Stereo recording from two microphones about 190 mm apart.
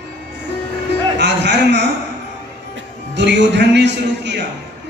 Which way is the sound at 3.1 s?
65° right (ahead or behind).